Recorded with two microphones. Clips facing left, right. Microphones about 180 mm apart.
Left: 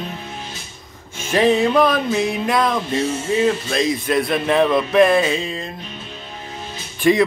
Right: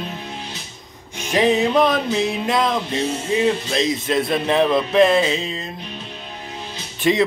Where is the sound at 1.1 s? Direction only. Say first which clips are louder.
Left 1 dB; 15° right (ahead or behind).